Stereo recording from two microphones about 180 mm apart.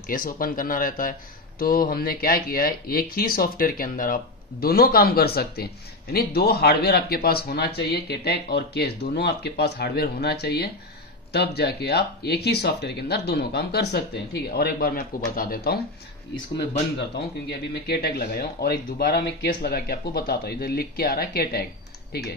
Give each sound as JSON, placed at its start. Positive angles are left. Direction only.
{"t": 0.1, "sound": "speech", "side_deg": 50}
{"t": 17.5, "sound": "speech", "side_deg": 65}